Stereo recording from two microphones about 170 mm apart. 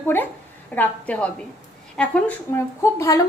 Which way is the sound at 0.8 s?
5° left (ahead or behind).